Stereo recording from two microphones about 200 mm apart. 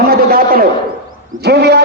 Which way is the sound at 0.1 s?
50° right (ahead or behind).